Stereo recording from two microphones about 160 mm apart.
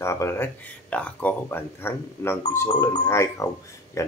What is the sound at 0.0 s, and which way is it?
Speech, 15° left (ahead or behind).